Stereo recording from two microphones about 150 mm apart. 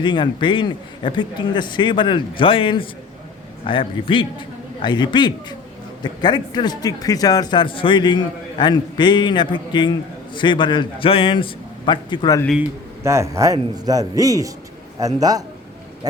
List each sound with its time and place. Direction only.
0.0 s a man's voice: 30° left (ahead or behind)
13.0 s a man's voice: 20° right (ahead or behind)